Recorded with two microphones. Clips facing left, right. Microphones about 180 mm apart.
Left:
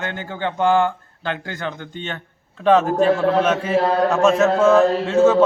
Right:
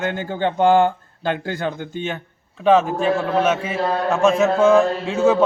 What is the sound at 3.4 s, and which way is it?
A man's voice, 5° right (ahead or behind).